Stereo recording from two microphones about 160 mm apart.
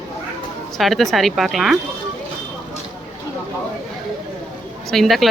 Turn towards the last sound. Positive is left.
turn(degrees=0)  # may be behind; listen again after turning